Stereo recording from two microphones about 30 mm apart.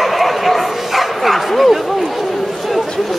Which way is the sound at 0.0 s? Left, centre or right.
Centre.